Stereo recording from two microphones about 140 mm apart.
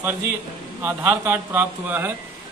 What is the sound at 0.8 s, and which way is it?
Speech, 15° right (ahead or behind).